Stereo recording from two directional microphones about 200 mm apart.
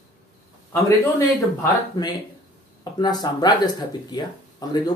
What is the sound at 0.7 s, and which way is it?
A man's voice, 15° left (ahead or behind).